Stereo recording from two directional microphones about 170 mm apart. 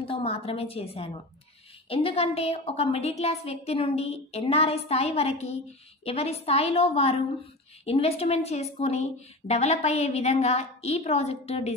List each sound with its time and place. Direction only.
0.0 s a woman's voice: 35° left (ahead or behind)